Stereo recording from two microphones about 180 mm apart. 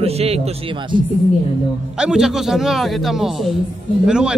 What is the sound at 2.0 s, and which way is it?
A man's voice, 5° right (ahead or behind).